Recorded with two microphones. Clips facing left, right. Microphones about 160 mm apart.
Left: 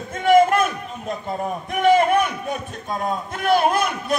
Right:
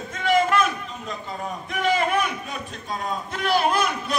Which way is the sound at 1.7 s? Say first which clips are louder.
Left 7 dB; 50° left (ahead or behind).